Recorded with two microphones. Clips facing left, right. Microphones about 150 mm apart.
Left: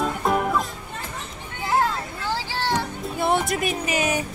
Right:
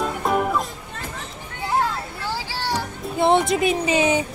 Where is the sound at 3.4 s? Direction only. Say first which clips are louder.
Right 5 dB; 25° right (ahead or behind).